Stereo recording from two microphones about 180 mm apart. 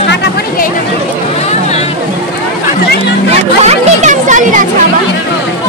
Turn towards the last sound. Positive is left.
turn(degrees=-45)  # may be behind; listen again after turning